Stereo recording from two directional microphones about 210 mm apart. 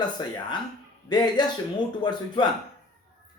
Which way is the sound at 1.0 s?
20° left (ahead or behind).